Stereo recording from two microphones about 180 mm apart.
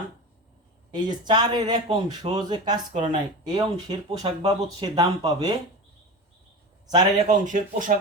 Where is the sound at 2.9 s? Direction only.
40° right (ahead or behind).